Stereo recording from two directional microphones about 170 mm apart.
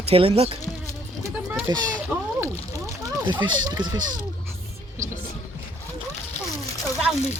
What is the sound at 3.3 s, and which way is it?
Speech, 25° right (ahead or behind).